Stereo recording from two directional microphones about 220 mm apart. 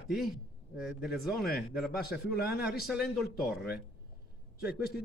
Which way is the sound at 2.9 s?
Centre (ahead or behind).